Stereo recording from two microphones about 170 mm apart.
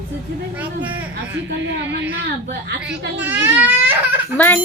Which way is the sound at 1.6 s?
90° right.